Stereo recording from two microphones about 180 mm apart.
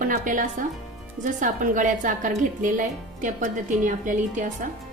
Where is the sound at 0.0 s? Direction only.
45° right (ahead or behind).